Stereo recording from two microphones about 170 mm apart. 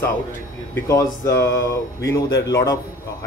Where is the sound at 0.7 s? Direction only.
20° left (ahead or behind).